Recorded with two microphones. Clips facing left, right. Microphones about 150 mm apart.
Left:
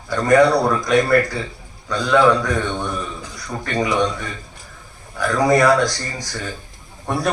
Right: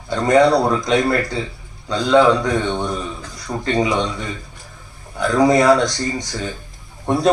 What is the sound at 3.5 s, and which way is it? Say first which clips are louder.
Speech: right 3 dB; 25° right (ahead or behind).